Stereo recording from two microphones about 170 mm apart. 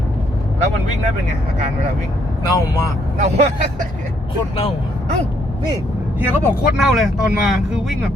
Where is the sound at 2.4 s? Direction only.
20° left (ahead or behind).